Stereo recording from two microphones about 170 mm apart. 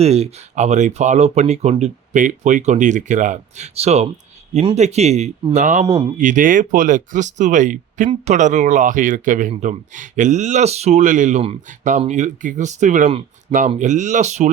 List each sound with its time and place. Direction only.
0.0 s speech: 40° right (ahead or behind)
5.8 s speech: 25° right (ahead or behind)
6.1 s speech: 50° right (ahead or behind)